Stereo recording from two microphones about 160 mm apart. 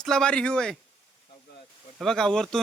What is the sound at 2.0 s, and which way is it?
Speech, 5° left (ahead or behind).